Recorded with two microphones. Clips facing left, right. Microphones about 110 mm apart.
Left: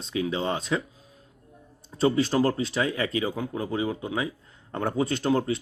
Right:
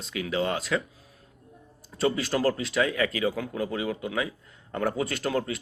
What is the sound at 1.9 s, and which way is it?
Speech, 30° left (ahead or behind).